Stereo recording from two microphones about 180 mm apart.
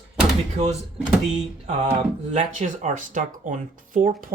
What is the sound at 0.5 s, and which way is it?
Speech, 40° right (ahead or behind).